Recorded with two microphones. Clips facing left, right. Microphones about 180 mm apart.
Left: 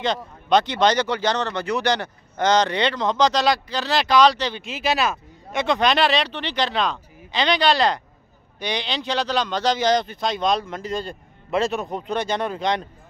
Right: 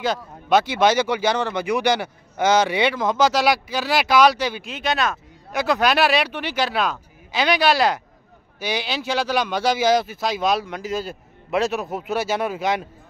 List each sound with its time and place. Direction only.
0.0 s speech: 5° right (ahead or behind)
4.6 s speech: 5° left (ahead or behind)